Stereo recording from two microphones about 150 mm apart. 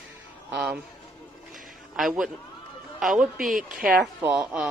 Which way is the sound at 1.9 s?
Centre (ahead or behind).